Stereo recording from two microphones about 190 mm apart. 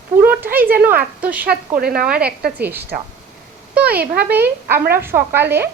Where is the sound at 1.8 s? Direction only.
55° right (ahead or behind).